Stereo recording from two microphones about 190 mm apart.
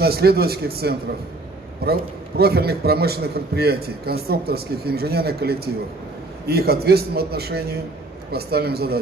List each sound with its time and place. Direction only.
0.0 s a man's voice: 55° right (ahead or behind)